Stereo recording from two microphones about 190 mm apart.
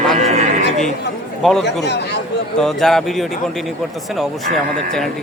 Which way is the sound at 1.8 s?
60° left (ahead or behind).